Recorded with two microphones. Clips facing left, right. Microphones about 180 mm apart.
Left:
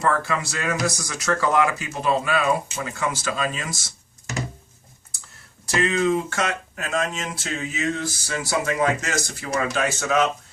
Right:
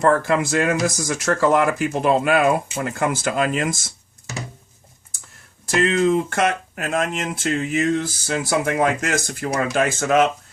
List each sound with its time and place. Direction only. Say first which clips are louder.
0.0 s speech: right 6 dB; 50° right (ahead or behind)
6.3 s speech: right 5 dB; 60° right (ahead or behind)